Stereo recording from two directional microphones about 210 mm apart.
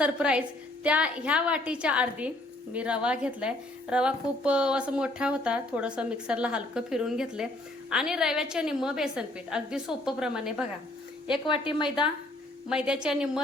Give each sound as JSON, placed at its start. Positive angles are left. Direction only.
{"t": 0.0, "sound": "a woman's voice", "side_deg": -5}
{"t": 11.5, "sound": "a woman's voice", "side_deg": 25}
{"t": 12.6, "sound": "a woman's voice", "side_deg": -5}